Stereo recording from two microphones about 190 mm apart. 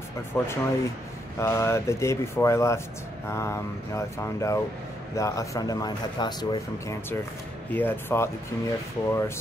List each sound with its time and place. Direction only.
0.3 s speech: 10° left (ahead or behind)